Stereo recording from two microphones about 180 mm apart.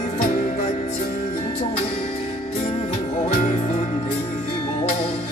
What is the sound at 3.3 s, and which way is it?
Music, 45° left (ahead or behind).